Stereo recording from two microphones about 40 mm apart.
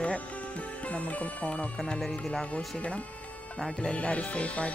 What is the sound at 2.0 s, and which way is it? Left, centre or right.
Music, centre.